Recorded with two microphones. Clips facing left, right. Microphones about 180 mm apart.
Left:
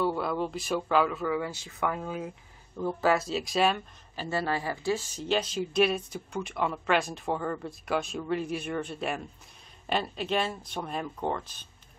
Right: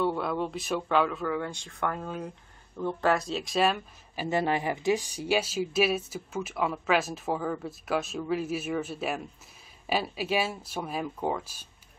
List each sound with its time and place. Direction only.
0.0 s speech: centre (ahead or behind)
4.1 s speech: 15° right (ahead or behind)